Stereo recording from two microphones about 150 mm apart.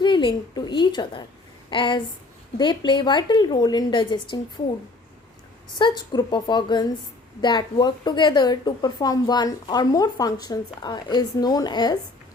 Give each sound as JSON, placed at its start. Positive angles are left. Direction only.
{"t": 0.0, "sound": "a woman's voice", "side_deg": 30}
{"t": 5.6, "sound": "a woman's voice", "side_deg": 30}